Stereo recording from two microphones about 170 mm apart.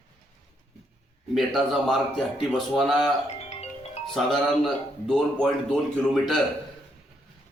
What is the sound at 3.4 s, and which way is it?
Music, 40° left (ahead or behind).